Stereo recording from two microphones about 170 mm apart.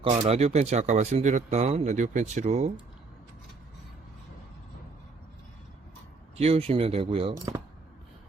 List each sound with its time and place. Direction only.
0.0 s speech: 35° right (ahead or behind)
6.3 s speech: 35° right (ahead or behind)